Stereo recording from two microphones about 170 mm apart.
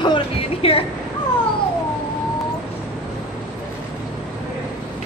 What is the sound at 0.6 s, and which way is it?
Speech, 35° left (ahead or behind).